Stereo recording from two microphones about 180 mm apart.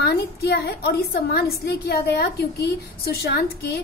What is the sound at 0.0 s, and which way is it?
A woman's voice, 65° left (ahead or behind).